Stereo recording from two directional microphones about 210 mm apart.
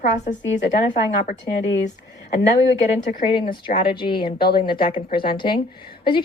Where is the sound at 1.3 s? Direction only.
60° left (ahead or behind).